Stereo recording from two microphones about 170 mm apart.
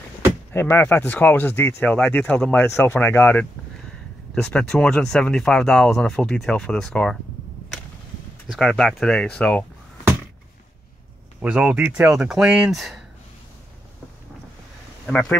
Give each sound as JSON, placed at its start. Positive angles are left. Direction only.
{"t": 0.5, "sound": "speech", "side_deg": 15}
{"t": 8.5, "sound": "speech", "side_deg": 0}
{"t": 11.4, "sound": "speech", "side_deg": -5}
{"t": 15.0, "sound": "speech", "side_deg": 5}